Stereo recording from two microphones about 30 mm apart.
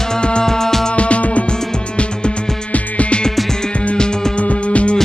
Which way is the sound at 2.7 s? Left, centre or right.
Left.